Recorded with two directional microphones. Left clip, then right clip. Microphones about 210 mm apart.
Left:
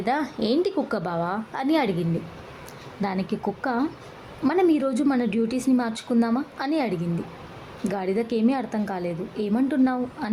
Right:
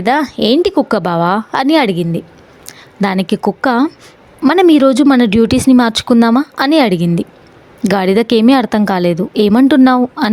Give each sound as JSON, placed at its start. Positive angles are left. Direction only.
{"t": 0.0, "sound": "a woman's voice", "side_deg": -40}